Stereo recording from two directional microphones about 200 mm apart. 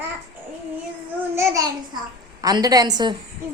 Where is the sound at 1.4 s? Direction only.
15° right (ahead or behind).